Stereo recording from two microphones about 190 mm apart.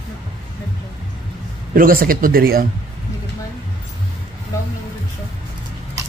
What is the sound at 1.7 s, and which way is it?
Speech, 50° right (ahead or behind).